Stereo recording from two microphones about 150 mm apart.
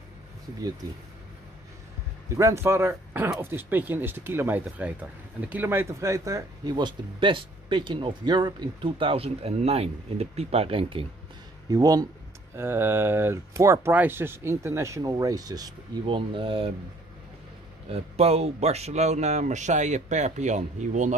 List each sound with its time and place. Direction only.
2.2 s speech: 20° right (ahead or behind); by 11.1 s 35° right (ahead or behind)
11.7 s speech: 25° right (ahead or behind)
17.8 s speech: 40° right (ahead or behind)